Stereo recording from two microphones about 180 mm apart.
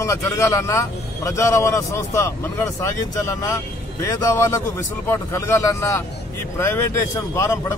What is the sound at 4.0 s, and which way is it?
A man's voice, 15° left (ahead or behind).